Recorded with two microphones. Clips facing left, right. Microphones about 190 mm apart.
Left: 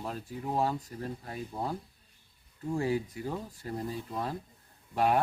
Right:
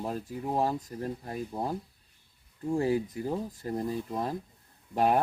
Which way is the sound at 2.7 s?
35° right (ahead or behind).